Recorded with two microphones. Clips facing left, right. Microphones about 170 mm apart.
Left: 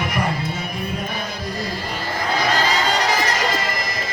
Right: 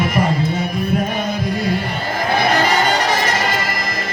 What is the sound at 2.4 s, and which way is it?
Music, 65° right (ahead or behind).